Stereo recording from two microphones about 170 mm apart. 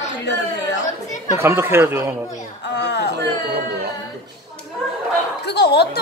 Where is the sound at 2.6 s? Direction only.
90° left.